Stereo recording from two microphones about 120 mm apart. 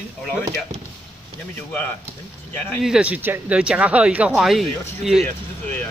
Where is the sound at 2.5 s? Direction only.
15° left (ahead or behind).